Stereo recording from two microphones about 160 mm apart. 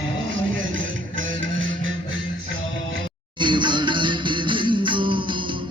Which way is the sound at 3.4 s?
30° right (ahead or behind).